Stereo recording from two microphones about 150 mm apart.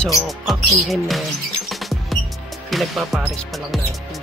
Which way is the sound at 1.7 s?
Centre (ahead or behind).